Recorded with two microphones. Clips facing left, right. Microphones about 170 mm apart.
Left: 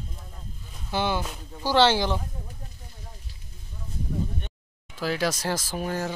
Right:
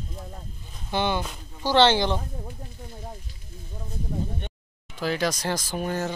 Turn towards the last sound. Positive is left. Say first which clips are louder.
# right 1 dB
turn(degrees=5)  # may be behind; listen again after turning